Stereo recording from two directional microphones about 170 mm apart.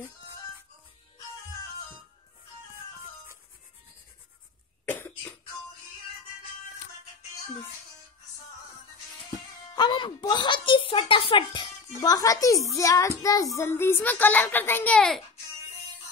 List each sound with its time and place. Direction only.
4.8 s cough: 10° left (ahead or behind)
9.8 s speech: 25° left (ahead or behind); by 15.2 s 5° left (ahead or behind)